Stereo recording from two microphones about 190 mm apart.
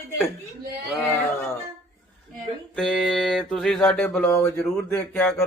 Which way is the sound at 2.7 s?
Centre (ahead or behind).